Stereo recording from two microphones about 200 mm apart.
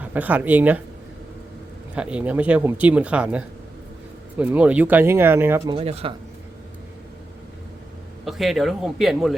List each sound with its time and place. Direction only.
0.0 s speech: 10° right (ahead or behind)
2.0 s speech: 5° right (ahead or behind)
5.7 s speech: 30° right (ahead or behind)
8.2 s a man's voice: centre (ahead or behind)